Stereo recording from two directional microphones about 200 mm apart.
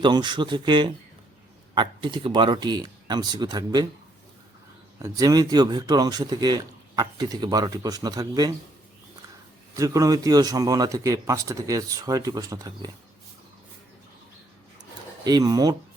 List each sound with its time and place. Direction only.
0.0 s speech: 20° right (ahead or behind)
4.9 s speech: 15° right (ahead or behind)
9.7 s a man's voice: 15° right (ahead or behind)
15.2 s speech: 20° right (ahead or behind)